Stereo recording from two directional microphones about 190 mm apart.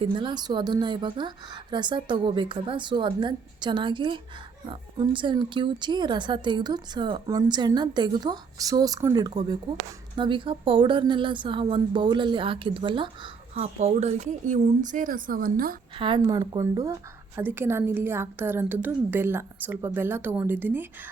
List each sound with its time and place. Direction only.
0.0 s speech: 25° right (ahead or behind)
13.5 s speech: 35° right (ahead or behind)
16.0 s a woman's voice: 25° right (ahead or behind)